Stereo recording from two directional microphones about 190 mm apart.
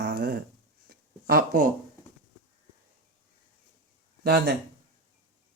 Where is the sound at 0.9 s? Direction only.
55° right (ahead or behind).